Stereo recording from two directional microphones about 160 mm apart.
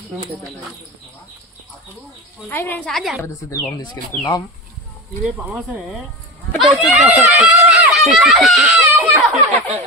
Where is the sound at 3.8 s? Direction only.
25° left (ahead or behind).